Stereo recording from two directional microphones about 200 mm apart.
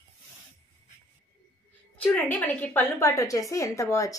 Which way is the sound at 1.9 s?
10° left (ahead or behind).